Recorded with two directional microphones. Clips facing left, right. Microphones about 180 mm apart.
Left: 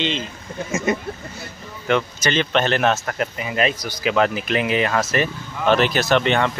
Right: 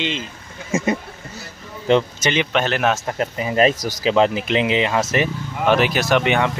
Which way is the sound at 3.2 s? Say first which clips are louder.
Right 4 dB; 35° right (ahead or behind).